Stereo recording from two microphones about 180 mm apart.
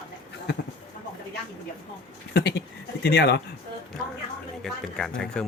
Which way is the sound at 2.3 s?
65° left (ahead or behind).